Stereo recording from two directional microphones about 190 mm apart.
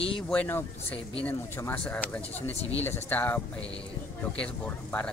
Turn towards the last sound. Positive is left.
turn(degrees=5)  # may be behind; listen again after turning